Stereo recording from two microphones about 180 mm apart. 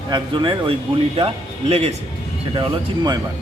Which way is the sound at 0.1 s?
25° right (ahead or behind).